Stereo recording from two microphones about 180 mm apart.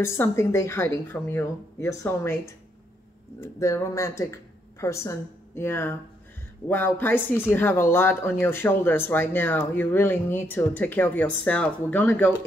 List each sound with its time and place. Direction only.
0.0 s speech: 15° left (ahead or behind)